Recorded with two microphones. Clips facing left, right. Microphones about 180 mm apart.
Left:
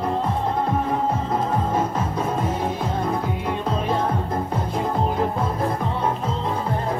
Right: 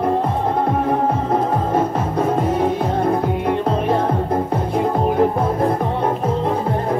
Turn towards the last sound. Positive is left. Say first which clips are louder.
# right 6 dB
turn(degrees=-55)  # may be behind; listen again after turning